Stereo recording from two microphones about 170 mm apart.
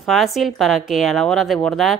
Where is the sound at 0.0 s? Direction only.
Centre (ahead or behind).